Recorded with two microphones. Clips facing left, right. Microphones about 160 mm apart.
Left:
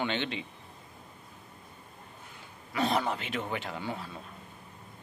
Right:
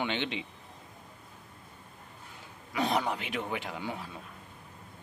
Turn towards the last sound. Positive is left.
turn(degrees=-15)  # may be behind; listen again after turning